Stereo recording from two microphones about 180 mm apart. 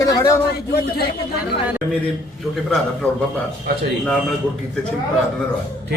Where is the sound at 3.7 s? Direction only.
65° right (ahead or behind).